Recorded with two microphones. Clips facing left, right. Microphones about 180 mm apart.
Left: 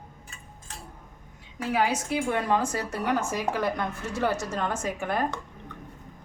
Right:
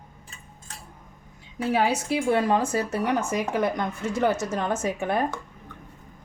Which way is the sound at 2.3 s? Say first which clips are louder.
Right 4 dB; 25° right (ahead or behind).